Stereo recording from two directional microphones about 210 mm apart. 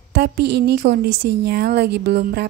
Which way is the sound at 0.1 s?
50° right (ahead or behind).